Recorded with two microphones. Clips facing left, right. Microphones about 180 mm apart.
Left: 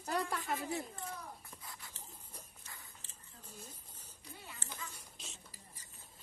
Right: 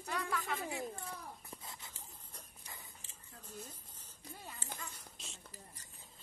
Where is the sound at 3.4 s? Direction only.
10° left (ahead or behind).